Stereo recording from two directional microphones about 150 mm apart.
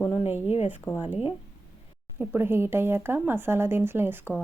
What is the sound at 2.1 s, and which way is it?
A woman's voice, 15° right (ahead or behind).